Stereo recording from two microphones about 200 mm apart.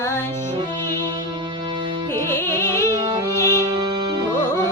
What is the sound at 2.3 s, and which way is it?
Music, 15° left (ahead or behind).